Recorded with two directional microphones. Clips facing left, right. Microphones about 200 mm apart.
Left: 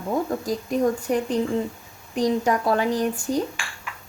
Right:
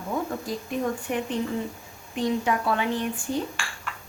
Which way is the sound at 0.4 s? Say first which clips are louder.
Left 6 dB; 40° left (ahead or behind).